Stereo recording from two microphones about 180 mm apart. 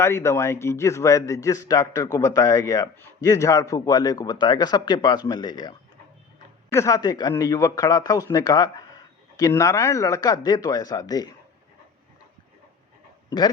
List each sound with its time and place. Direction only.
0.0 s a man's voice: 15° left (ahead or behind)